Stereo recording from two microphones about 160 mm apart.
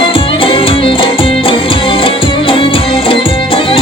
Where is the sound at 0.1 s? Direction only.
35° left (ahead or behind).